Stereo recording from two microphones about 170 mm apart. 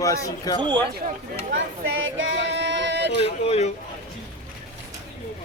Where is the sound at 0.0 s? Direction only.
20° left (ahead or behind).